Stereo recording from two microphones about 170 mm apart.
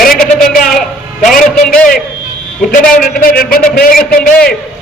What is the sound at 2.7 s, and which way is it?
A man's voice, 55° left (ahead or behind).